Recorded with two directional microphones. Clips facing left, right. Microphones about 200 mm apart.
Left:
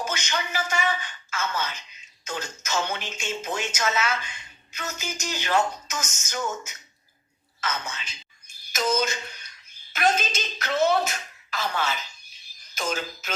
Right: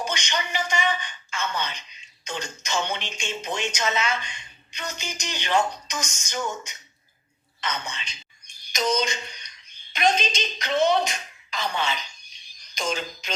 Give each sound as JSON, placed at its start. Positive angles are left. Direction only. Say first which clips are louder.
{"t": 0.0, "sound": "a woman's voice", "louder": "right 1 dB", "side_deg": 5}
{"t": 7.6, "sound": "a sound", "louder": "even", "side_deg": 5}
{"t": 10.8, "sound": "speech", "louder": "right 1 dB", "side_deg": 5}